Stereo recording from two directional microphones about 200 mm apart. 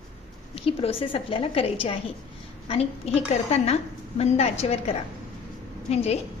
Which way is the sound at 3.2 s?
30° left (ahead or behind).